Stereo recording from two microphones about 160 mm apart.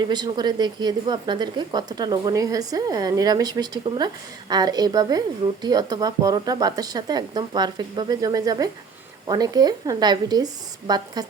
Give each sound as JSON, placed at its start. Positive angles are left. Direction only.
{"t": 0.1, "sound": "a woman's voice", "side_deg": -25}